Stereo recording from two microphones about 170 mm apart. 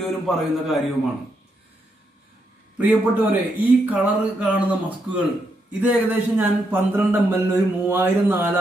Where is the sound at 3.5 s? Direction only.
10° right (ahead or behind).